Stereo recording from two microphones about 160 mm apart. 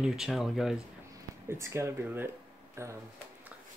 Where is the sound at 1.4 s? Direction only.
15° right (ahead or behind).